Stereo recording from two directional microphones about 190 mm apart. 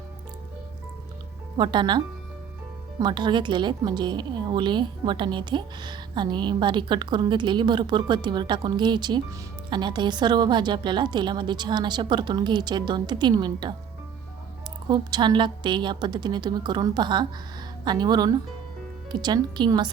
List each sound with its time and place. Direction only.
1.5 s a woman's voice: 25° right (ahead or behind)
3.0 s a woman's voice: 25° right (ahead or behind)
14.8 s a woman's voice: 25° right (ahead or behind)